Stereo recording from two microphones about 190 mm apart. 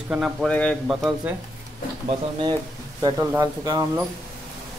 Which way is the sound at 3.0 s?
20° right (ahead or behind).